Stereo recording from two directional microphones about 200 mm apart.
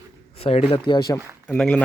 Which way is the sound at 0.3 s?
30° left (ahead or behind).